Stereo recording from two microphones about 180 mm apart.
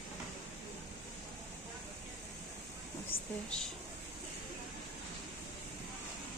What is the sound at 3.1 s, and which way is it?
Speech, 55° left (ahead or behind).